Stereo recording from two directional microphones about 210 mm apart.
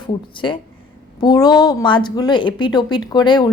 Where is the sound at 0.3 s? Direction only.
25° left (ahead or behind).